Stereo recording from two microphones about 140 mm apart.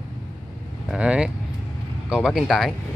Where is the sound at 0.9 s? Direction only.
5° right (ahead or behind).